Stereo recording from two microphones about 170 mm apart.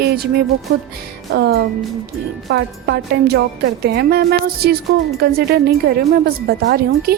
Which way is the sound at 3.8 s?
70° right (ahead or behind).